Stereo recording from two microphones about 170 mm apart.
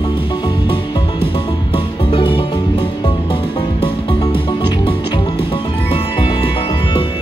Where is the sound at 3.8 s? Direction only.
30° left (ahead or behind).